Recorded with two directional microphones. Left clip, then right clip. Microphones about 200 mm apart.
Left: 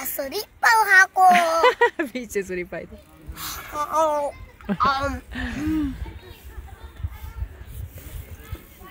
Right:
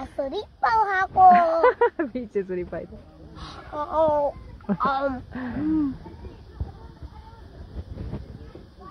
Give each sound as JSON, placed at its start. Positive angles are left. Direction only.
{"t": 0.1, "sound": "speech", "side_deg": 20}
{"t": 1.3, "sound": "speech", "side_deg": 30}
{"t": 3.3, "sound": "speech", "side_deg": 15}
{"t": 5.3, "sound": "speech", "side_deg": 25}